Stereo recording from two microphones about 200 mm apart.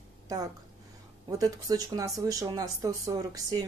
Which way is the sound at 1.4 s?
15° right (ahead or behind).